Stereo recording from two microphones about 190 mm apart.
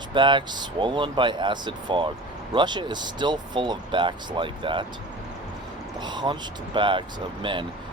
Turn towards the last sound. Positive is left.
turn(degrees=-25)  # may be behind; listen again after turning